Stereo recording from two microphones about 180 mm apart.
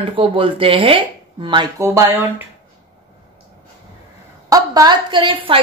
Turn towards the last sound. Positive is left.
turn(degrees=-30)  # may be behind; listen again after turning